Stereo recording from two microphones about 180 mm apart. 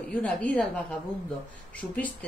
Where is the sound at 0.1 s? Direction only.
10° left (ahead or behind).